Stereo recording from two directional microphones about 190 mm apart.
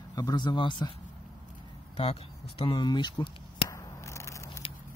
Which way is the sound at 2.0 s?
25° left (ahead or behind).